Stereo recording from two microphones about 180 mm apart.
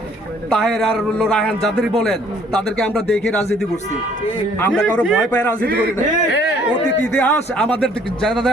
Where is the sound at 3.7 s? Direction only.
40° left (ahead or behind).